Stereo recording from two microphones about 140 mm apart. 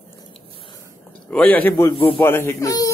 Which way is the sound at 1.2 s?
10° left (ahead or behind).